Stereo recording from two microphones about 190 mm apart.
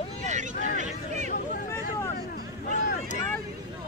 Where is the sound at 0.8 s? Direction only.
40° right (ahead or behind).